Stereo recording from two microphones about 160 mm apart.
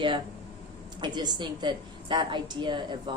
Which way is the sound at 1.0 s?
25° right (ahead or behind).